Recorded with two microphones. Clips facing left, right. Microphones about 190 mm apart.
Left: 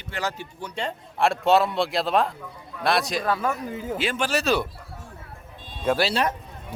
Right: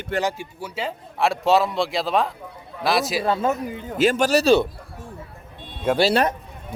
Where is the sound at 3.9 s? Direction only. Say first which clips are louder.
Right 9 dB; 40° right (ahead or behind).